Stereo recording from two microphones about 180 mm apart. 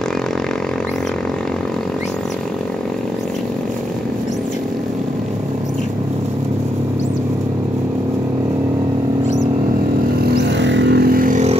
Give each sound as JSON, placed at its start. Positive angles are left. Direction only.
{"t": 10.6, "sound": "vehicle", "side_deg": -80}